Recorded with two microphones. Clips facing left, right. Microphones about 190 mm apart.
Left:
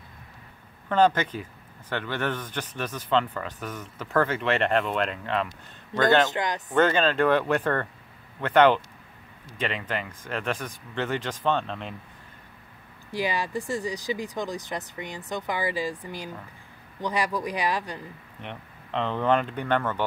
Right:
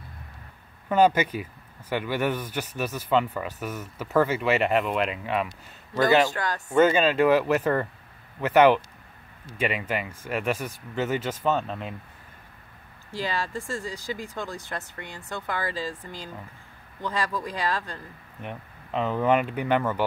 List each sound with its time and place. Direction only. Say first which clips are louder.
0.8 s speech: right 1 dB; 10° right (ahead or behind)
6.3 s speech: left 1 dB; 20° left (ahead or behind)
6.7 s speech: right 3 dB; 5° right (ahead or behind)
13.1 s speech: left 2 dB; 15° left (ahead or behind)
18.4 s speech: right 2 dB; 5° right (ahead or behind)